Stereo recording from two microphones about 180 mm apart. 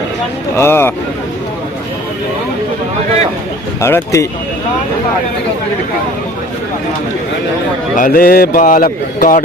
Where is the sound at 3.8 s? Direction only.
15° left (ahead or behind).